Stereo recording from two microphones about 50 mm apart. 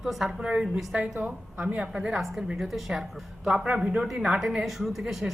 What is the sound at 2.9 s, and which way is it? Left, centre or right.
A woman's voice, centre.